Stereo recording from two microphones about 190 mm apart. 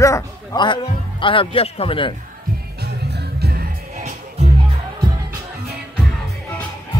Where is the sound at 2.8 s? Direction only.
60° right (ahead or behind).